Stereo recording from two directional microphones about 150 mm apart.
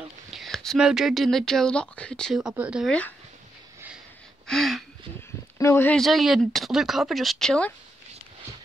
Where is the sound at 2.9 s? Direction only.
10° left (ahead or behind).